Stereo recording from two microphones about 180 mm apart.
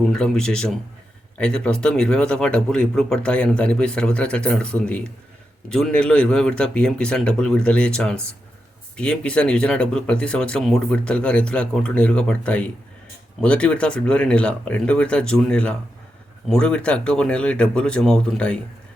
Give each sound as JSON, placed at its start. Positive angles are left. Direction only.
{"t": 0.1, "sound": "speech", "side_deg": 5}